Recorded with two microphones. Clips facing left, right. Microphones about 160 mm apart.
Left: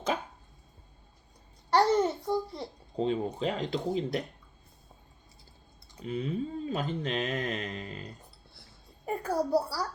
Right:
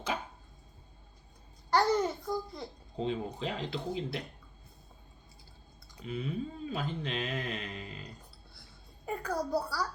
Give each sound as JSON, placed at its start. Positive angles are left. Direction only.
{"t": 1.7, "sound": "babbling", "side_deg": 25}
{"t": 2.9, "sound": "speech", "side_deg": 40}
{"t": 6.0, "sound": "speech", "side_deg": 40}
{"t": 9.0, "sound": "a child's voice", "side_deg": 30}